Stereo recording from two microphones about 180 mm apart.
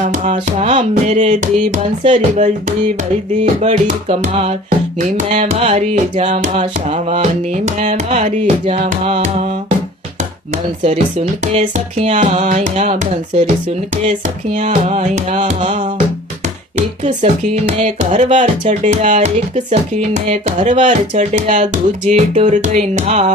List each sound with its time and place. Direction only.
0.0 s music: 40° right (ahead or behind)
11.5 s music: 35° right (ahead or behind)
14.5 s music: 40° right (ahead or behind)